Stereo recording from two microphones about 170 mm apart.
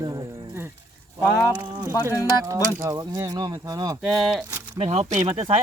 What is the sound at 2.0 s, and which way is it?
Speech, 15° right (ahead or behind).